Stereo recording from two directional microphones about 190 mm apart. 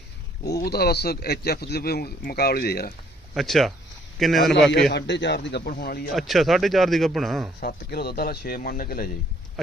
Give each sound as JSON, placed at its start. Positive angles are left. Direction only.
{"t": 0.6, "sound": "speech", "side_deg": 55}
{"t": 3.3, "sound": "speech", "side_deg": 0}
{"t": 4.7, "sound": "speech", "side_deg": 60}
{"t": 6.1, "sound": "speech", "side_deg": 0}
{"t": 7.6, "sound": "speech", "side_deg": 55}